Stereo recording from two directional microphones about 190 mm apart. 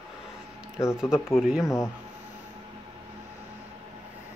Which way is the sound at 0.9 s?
Centre (ahead or behind).